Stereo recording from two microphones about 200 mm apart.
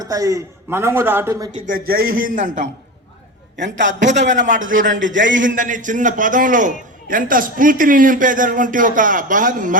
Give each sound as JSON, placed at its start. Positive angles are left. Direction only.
{"t": 0.0, "sound": "a man's voice", "side_deg": -15}
{"t": 1.6, "sound": "a man's voice", "side_deg": -45}
{"t": 3.6, "sound": "a man's voice", "side_deg": -65}
{"t": 4.4, "sound": "a man's voice", "side_deg": -40}
{"t": 4.9, "sound": "a man's voice", "side_deg": -70}
{"t": 5.4, "sound": "a man's voice", "side_deg": -40}